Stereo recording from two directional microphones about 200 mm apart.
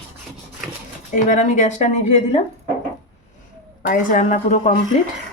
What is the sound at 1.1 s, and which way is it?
Speech, 40° left (ahead or behind).